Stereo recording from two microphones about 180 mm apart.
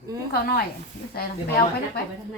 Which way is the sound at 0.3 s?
55° left (ahead or behind).